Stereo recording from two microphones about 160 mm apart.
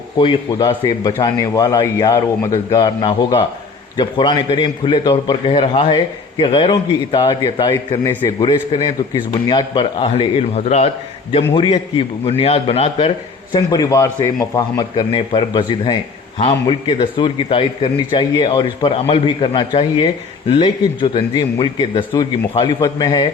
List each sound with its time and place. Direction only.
0.2 s a man's voice: 30° left (ahead or behind)
13.5 s a man's voice: 25° left (ahead or behind)